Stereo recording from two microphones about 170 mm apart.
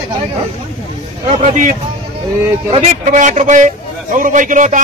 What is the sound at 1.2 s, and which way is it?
Speech, 40° right (ahead or behind).